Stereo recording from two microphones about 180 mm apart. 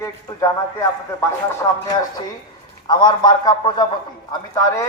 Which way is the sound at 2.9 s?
25° left (ahead or behind).